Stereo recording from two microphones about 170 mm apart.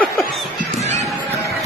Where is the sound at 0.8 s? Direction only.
40° right (ahead or behind).